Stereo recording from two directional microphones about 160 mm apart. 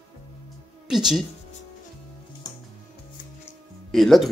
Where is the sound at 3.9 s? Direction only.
Centre (ahead or behind).